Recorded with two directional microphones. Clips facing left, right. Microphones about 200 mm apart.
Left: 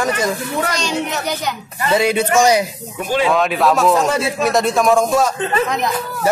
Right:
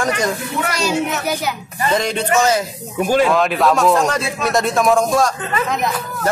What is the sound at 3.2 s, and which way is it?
Speech, centre (ahead or behind).